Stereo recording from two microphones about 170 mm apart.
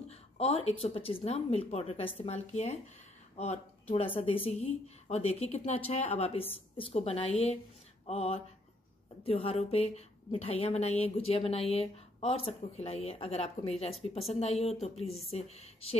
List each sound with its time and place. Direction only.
0.1 s a woman's voice: 35° left (ahead or behind)
3.9 s a woman's voice: 35° left (ahead or behind)